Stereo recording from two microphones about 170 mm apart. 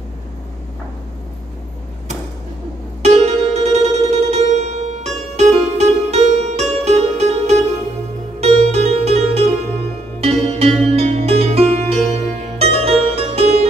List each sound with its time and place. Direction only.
3.0 s music: 40° right (ahead or behind)